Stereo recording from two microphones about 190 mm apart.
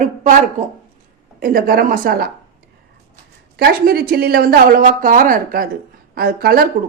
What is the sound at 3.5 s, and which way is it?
Speech, 55° right (ahead or behind).